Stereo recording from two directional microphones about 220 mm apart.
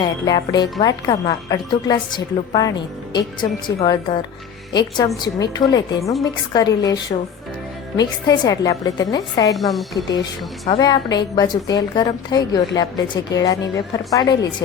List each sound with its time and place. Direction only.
0.0 s a woman's voice: 20° left (ahead or behind)
9.6 s a woman's voice: centre (ahead or behind)
10.7 s a woman's voice: 20° left (ahead or behind)